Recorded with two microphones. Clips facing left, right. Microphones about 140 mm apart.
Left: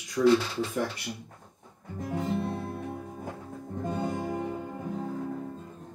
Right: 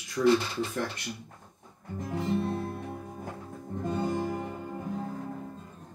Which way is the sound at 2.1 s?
15° left (ahead or behind).